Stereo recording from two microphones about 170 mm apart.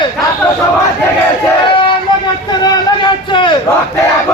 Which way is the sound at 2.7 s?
30° left (ahead or behind).